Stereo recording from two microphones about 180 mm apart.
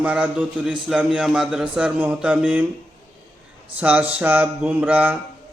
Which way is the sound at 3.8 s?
10° right (ahead or behind).